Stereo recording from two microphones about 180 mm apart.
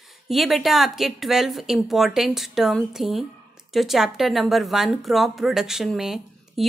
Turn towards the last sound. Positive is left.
turn(degrees=0)  # may be behind; listen again after turning